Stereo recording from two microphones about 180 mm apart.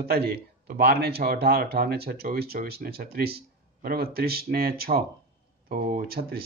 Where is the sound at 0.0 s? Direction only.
60° right (ahead or behind).